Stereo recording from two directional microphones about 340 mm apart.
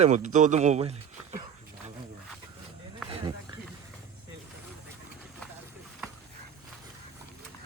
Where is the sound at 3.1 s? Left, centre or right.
Centre.